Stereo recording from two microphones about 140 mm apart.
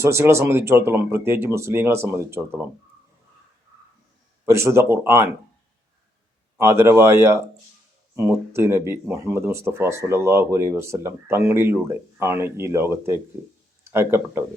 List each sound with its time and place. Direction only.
0.0 s speech: 20° right (ahead or behind)
4.4 s speech: 20° right (ahead or behind)
6.6 s speech: 20° right (ahead or behind)